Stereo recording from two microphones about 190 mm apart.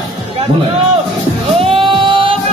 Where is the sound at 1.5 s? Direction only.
25° right (ahead or behind).